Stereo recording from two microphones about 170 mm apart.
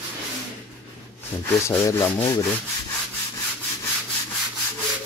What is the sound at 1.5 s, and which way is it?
Rub, 15° left (ahead or behind).